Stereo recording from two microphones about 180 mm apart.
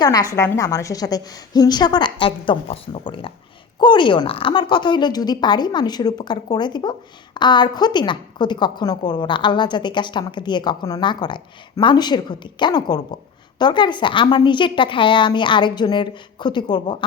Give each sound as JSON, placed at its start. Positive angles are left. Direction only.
{"t": 0.0, "sound": "a woman's voice", "side_deg": 20}